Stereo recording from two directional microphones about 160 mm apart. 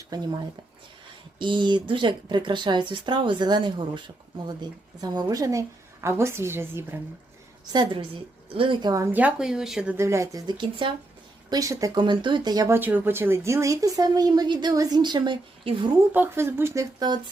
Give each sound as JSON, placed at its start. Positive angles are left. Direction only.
{"t": 0.1, "sound": "speech", "side_deg": -25}
{"t": 1.4, "sound": "a woman's voice", "side_deg": -30}
{"t": 7.6, "sound": "speech", "side_deg": -25}
{"t": 9.1, "sound": "a woman's voice", "side_deg": -5}
{"t": 16.1, "sound": "a woman's voice", "side_deg": -15}